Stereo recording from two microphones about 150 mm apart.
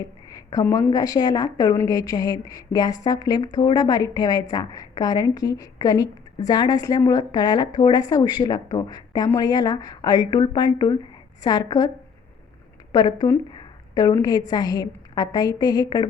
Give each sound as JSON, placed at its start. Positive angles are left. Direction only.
{"t": 0.3, "sound": "a woman's voice", "side_deg": 25}
{"t": 12.9, "sound": "a woman's voice", "side_deg": 25}